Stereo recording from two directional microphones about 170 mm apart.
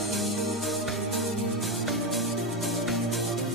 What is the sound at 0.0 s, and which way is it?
Music, centre (ahead or behind).